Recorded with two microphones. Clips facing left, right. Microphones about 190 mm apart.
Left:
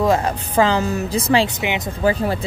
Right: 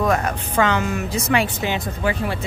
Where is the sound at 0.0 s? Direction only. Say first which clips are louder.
Left 3 dB; 25° left (ahead or behind).